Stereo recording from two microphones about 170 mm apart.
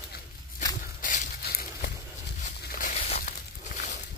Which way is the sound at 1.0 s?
60° left (ahead or behind).